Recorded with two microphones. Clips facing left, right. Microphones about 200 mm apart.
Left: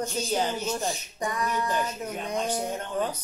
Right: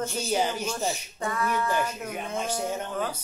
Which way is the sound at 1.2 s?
15° left (ahead or behind).